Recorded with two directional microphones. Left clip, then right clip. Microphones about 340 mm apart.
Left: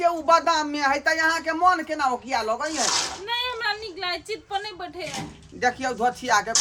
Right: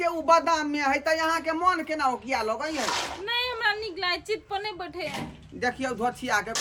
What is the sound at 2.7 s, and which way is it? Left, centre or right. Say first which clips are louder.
Speech: left 4 dB; right.